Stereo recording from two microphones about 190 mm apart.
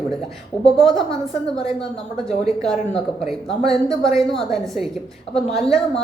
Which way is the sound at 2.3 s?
Centre (ahead or behind).